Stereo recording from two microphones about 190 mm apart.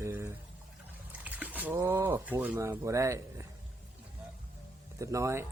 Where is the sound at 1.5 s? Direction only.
10° right (ahead or behind).